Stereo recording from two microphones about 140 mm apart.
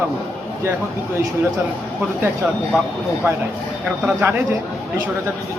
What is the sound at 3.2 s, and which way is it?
Speech, 10° right (ahead or behind).